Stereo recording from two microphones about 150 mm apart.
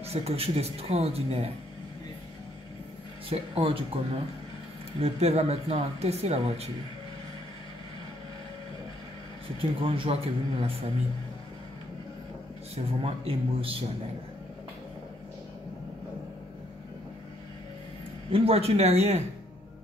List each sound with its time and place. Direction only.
0.0 s speech: 45° right (ahead or behind)
3.3 s speech: 40° right (ahead or behind)
9.6 s speech: 35° right (ahead or behind)
12.7 s speech: 40° right (ahead or behind)
18.3 s speech: 40° right (ahead or behind)